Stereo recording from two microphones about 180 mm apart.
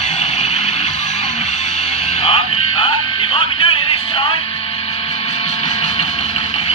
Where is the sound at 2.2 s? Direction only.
30° left (ahead or behind).